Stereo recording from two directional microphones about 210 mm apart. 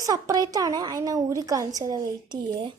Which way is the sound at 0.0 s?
15° right (ahead or behind).